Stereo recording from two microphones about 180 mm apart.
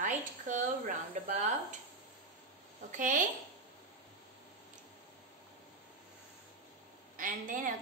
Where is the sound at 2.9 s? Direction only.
45° right (ahead or behind).